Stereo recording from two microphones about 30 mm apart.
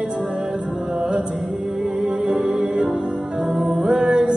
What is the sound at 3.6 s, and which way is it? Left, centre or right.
Music, right.